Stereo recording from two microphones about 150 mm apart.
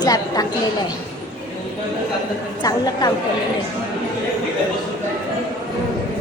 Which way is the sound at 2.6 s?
25° left (ahead or behind).